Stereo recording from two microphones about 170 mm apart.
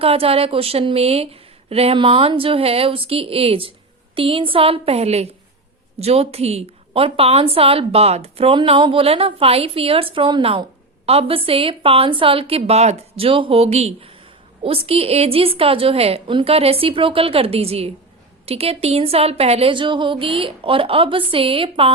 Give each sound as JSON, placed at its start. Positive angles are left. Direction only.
{"t": 0.0, "sound": "speech", "side_deg": -35}